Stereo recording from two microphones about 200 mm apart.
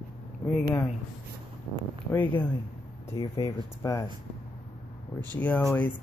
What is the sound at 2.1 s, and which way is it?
Speech, 10° left (ahead or behind).